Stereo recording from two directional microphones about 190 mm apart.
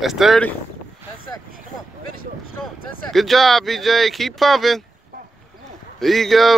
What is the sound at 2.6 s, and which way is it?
Speech, centre (ahead or behind).